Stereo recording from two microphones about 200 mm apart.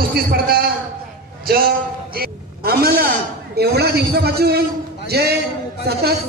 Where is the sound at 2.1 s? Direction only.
50° right (ahead or behind).